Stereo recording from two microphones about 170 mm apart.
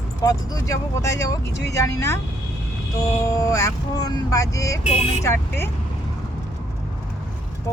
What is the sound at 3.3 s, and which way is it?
Speech, 20° left (ahead or behind).